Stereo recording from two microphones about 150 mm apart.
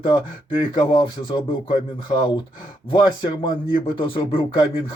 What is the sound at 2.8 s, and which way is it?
Speech, 30° left (ahead or behind).